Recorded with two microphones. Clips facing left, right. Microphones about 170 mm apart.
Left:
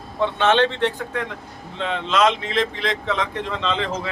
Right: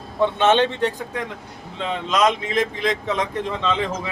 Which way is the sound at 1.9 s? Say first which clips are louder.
Even; 15° right (ahead or behind).